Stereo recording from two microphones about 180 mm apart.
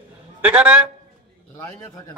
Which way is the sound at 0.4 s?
10° right (ahead or behind).